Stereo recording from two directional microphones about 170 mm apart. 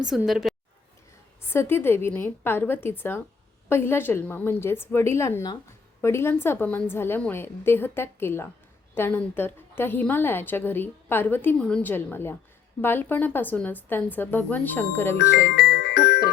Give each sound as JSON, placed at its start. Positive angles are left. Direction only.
{"t": 0.0, "sound": "a woman's voice", "side_deg": -5}
{"t": 1.4, "sound": "a woman's voice", "side_deg": 15}
{"t": 15.4, "sound": "music", "side_deg": 80}